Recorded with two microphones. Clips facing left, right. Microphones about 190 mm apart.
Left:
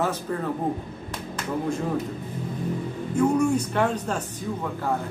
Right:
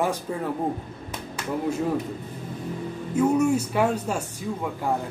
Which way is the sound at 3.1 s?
5° right (ahead or behind).